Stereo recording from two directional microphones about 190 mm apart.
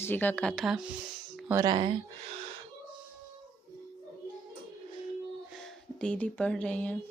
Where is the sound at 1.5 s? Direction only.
15° right (ahead or behind).